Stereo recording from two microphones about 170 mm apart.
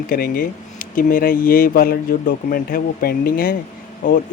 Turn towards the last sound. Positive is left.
turn(degrees=50)  # may be behind; listen again after turning